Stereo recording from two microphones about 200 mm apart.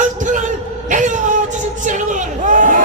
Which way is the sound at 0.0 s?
40° right (ahead or behind).